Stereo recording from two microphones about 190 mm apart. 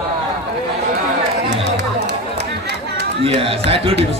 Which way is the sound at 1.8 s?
60° right (ahead or behind).